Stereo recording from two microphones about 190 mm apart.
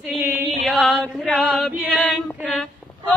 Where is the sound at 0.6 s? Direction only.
Centre (ahead or behind).